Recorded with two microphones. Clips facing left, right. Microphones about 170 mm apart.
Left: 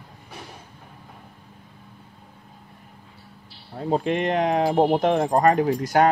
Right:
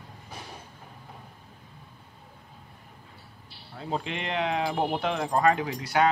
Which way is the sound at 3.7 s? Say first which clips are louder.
Left 9 dB; 45° left (ahead or behind).